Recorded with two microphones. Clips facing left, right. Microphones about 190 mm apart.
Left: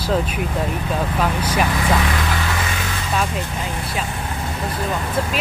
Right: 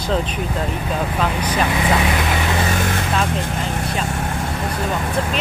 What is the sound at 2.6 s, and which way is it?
Vehicle, 50° right (ahead or behind).